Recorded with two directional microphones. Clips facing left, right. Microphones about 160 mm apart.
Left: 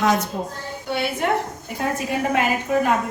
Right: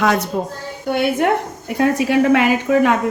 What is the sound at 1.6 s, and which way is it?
Speech, 75° right (ahead or behind).